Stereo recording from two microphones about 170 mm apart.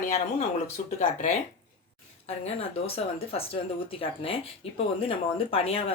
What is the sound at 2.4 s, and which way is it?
Speech, 35° left (ahead or behind).